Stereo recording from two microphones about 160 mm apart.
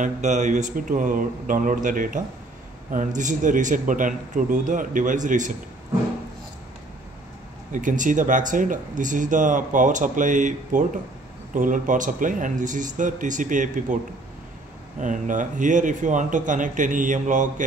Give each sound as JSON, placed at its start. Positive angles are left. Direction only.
{"t": 0.0, "sound": "speech", "side_deg": -50}
{"t": 7.7, "sound": "speech", "side_deg": -55}
{"t": 15.0, "sound": "speech", "side_deg": -50}